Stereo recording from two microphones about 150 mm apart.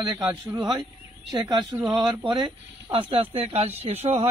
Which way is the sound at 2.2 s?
35° right (ahead or behind).